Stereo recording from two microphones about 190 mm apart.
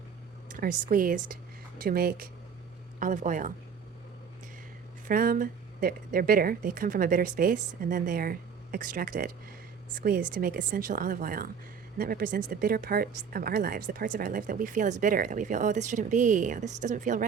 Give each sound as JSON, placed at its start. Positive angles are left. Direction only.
{"t": 0.5, "sound": "speech", "side_deg": -45}
{"t": 5.0, "sound": "speech", "side_deg": -50}